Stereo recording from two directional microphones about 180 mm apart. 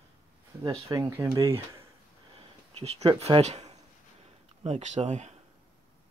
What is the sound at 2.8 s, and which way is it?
Speech, 35° right (ahead or behind).